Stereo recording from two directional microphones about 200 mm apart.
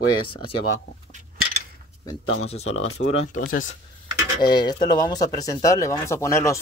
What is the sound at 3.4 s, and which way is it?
Speech, 45° left (ahead or behind).